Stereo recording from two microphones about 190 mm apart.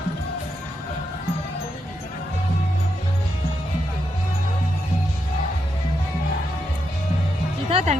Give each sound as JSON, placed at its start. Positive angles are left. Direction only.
{"t": 7.7, "sound": "music", "side_deg": -35}